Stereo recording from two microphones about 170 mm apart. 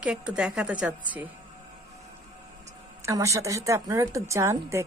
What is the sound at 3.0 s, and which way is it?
A woman's voice, 15° right (ahead or behind).